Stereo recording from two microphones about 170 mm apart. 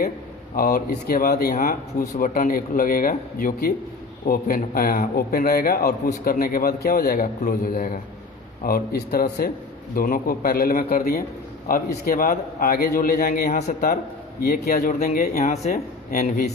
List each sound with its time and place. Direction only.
0.5 s a man's voice: 60° left (ahead or behind)
9.9 s a man's voice: 55° left (ahead or behind)
15.4 s speech: 45° left (ahead or behind)